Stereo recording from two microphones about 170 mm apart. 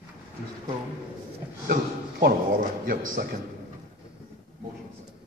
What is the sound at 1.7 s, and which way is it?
A man's voice, 60° right (ahead or behind).